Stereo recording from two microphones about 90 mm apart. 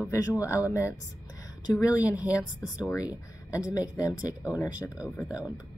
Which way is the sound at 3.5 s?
40° left (ahead or behind).